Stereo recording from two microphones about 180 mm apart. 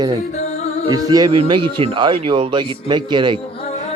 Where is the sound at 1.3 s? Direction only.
30° right (ahead or behind).